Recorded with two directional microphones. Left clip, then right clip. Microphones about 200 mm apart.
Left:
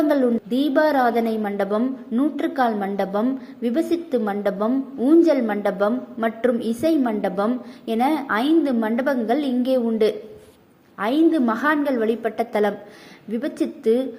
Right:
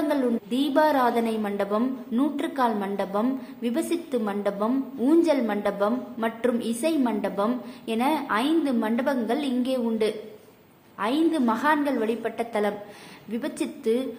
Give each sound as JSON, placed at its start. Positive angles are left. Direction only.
{"t": 0.1, "sound": "a woman's voice", "side_deg": 20}